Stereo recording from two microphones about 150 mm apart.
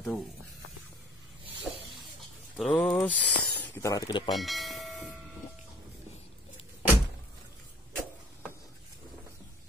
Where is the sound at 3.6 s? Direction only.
15° left (ahead or behind).